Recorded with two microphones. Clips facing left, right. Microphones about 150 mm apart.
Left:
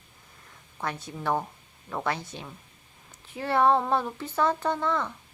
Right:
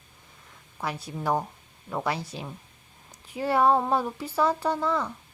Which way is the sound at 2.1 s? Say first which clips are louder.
Right 3 dB; 35° right (ahead or behind).